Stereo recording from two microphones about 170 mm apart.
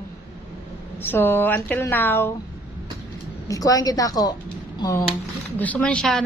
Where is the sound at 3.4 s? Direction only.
20° left (ahead or behind).